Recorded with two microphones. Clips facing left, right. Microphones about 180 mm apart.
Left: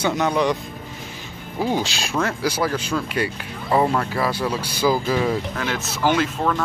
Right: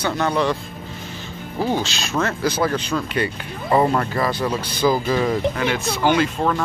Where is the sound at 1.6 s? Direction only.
10° left (ahead or behind).